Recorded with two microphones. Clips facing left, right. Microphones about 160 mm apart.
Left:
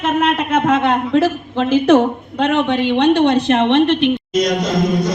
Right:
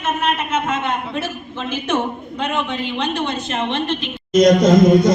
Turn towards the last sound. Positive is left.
turn(degrees=-50)  # may be behind; listen again after turning